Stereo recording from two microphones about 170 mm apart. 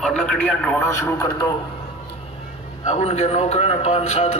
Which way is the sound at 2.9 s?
40° left (ahead or behind).